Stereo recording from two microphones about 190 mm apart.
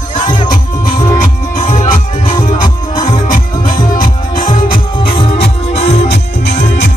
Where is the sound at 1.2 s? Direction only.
40° left (ahead or behind).